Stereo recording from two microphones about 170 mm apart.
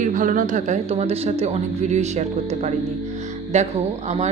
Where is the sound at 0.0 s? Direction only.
50° right (ahead or behind).